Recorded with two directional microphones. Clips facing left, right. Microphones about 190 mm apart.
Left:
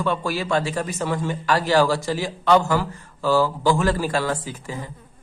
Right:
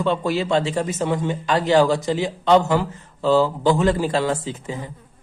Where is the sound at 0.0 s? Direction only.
25° right (ahead or behind).